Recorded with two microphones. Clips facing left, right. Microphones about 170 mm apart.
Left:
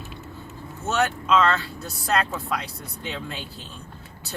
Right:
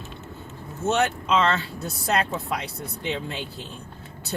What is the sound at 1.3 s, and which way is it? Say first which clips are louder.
Speech: left 2 dB; 25° right (ahead or behind).